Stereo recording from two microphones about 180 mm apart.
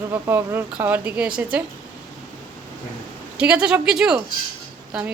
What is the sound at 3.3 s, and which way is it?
A woman's voice, 5° right (ahead or behind).